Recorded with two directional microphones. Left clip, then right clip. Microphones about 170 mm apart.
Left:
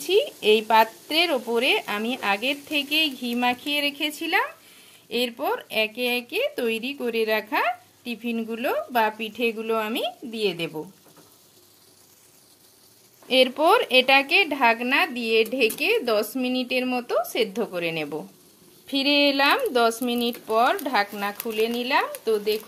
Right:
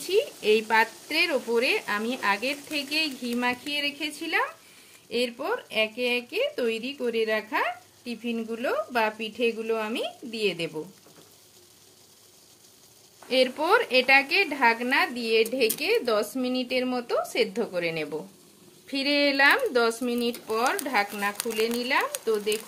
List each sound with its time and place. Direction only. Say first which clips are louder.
0.0 s a woman's voice: left 4 dB; 35° left (ahead or behind)
13.3 s a woman's voice: left 4 dB; 35° left (ahead or behind)
21.4 s speech: left 5 dB; centre (ahead or behind)
21.7 s speech: left 2 dB; 45° left (ahead or behind)